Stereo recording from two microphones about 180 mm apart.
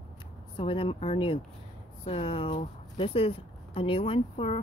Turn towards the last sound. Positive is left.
turn(degrees=35)  # may be behind; listen again after turning